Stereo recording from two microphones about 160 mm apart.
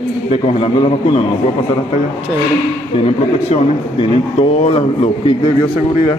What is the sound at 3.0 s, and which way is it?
A man's voice, 35° left (ahead or behind).